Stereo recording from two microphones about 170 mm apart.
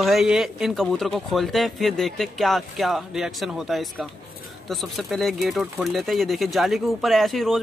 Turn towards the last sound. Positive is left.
turn(degrees=0)  # may be behind; listen again after turning